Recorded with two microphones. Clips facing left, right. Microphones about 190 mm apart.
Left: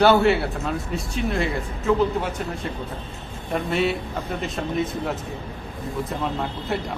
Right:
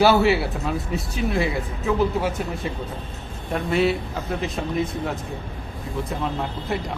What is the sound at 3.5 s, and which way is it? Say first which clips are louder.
Speech: right 2 dB; centre (ahead or behind).